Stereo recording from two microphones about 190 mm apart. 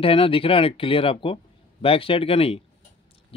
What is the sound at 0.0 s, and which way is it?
Speech, 30° left (ahead or behind).